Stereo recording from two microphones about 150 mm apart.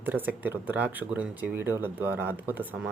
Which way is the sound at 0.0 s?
10° right (ahead or behind).